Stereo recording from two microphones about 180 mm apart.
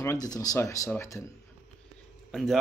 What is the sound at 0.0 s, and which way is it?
Speech, 20° left (ahead or behind).